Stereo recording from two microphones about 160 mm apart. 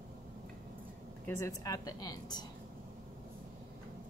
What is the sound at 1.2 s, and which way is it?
Speech, 20° left (ahead or behind).